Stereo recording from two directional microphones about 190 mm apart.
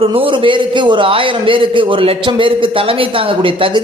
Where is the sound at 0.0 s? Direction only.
30° right (ahead or behind).